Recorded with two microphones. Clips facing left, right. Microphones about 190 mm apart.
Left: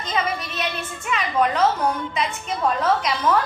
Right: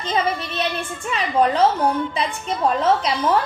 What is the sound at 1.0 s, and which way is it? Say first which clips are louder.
A woman's voice: right 2 dB; 30° right (ahead or behind).